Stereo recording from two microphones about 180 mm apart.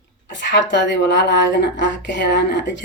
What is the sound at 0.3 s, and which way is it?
A woman's voice, 75° left (ahead or behind).